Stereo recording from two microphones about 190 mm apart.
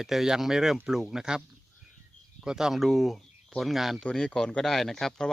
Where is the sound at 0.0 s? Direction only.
Centre (ahead or behind).